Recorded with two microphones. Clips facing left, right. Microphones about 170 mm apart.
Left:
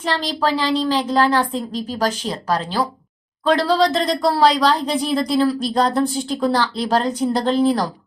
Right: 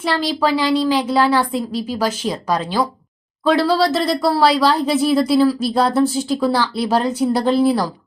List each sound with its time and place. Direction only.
0.0 s a woman's voice: 10° right (ahead or behind)